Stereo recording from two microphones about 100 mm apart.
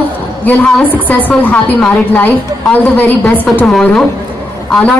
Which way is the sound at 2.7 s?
20° left (ahead or behind).